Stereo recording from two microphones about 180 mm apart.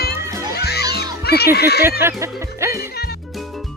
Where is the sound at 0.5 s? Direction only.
60° left (ahead or behind).